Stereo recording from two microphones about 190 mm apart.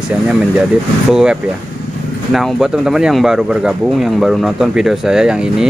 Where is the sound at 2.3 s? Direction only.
Centre (ahead or behind).